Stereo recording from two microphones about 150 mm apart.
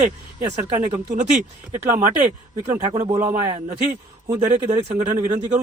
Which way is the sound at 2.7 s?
50° right (ahead or behind).